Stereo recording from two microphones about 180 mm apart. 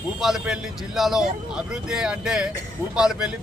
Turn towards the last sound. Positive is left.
turn(degrees=-5)  # may be behind; listen again after turning